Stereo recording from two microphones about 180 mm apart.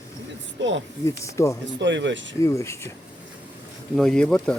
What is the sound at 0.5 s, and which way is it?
Speech, 90° right.